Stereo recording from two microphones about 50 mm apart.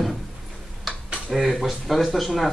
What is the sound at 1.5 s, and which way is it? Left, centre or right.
Speech, centre.